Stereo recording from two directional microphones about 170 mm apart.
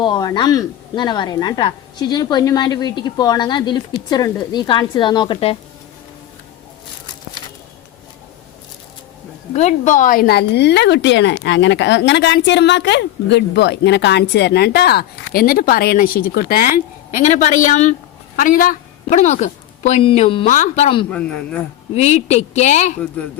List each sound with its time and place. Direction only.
0.0 s a woman's voice: 25° left (ahead or behind)
9.5 s a woman's voice: 45° left (ahead or behind); by 16.8 s 60° left (ahead or behind)
17.2 s a woman's voice: 45° left (ahead or behind)
19.2 s speech: 40° left (ahead or behind)
21.1 s a man's voice: 5° left (ahead or behind)
21.9 s speech: 40° left (ahead or behind)